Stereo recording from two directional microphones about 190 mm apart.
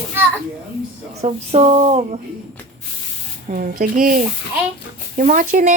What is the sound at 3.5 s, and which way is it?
Speech, 45° right (ahead or behind).